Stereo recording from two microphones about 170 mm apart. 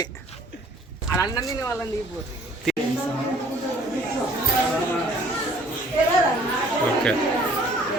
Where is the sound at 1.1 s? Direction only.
20° left (ahead or behind).